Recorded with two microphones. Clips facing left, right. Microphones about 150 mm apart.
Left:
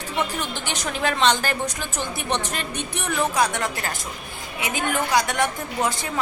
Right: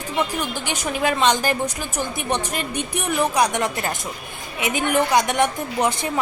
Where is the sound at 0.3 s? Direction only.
10° right (ahead or behind).